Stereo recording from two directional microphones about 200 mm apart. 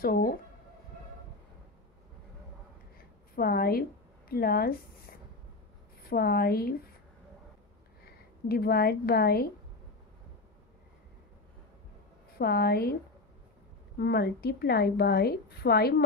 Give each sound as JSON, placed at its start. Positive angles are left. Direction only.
{"t": 0.0, "sound": "a woman's voice", "side_deg": 45}
{"t": 3.3, "sound": "a woman's voice", "side_deg": 50}
{"t": 6.0, "sound": "a woman's voice", "side_deg": 50}
{"t": 8.0, "sound": "speech", "side_deg": 50}
{"t": 12.4, "sound": "a woman's voice", "side_deg": 50}
{"t": 13.9, "sound": "a woman's voice", "side_deg": 50}